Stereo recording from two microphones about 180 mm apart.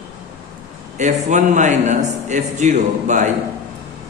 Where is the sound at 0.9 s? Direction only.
40° right (ahead or behind).